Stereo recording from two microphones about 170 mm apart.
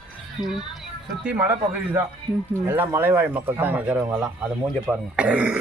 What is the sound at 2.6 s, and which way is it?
Speech, 10° right (ahead or behind).